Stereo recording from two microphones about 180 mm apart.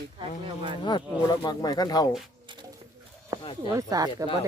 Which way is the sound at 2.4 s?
25° right (ahead or behind).